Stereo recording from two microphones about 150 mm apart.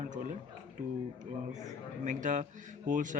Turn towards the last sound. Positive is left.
turn(degrees=-60)  # may be behind; listen again after turning